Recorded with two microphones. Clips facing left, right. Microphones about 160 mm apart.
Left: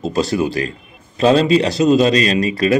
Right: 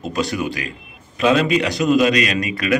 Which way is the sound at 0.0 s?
30° left (ahead or behind).